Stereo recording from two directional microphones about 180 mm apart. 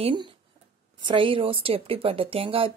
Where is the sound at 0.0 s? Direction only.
25° right (ahead or behind).